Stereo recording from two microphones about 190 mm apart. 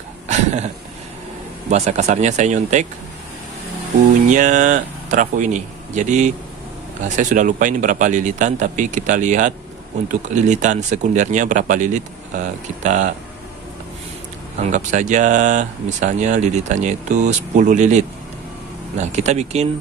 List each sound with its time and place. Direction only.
0.3 s a sound: 35° right (ahead or behind)
1.7 s speech: 35° right (ahead or behind)
4.3 s speech: 40° right (ahead or behind)
14.6 s speech: 40° right (ahead or behind)